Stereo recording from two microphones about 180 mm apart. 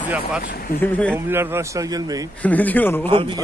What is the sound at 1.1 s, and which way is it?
Speech, 15° right (ahead or behind).